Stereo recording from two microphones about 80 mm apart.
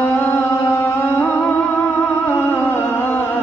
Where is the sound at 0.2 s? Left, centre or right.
Left.